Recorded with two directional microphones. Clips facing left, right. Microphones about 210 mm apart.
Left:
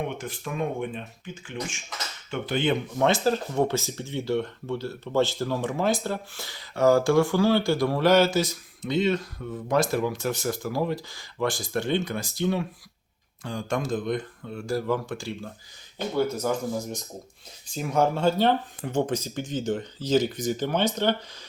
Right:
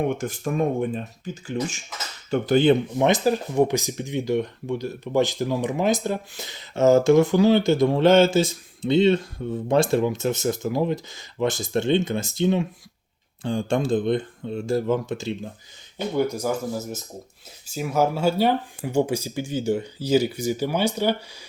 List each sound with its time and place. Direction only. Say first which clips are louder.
0.0 s speech: right 7 dB; 45° right (ahead or behind)
2.3 s cutlery: right 8 dB; 40° right (ahead or behind)
3.0 s speech: right 3 dB; 15° right (ahead or behind)